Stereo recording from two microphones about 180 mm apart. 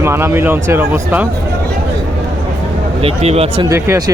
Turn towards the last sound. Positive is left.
turn(degrees=-20)  # may be behind; listen again after turning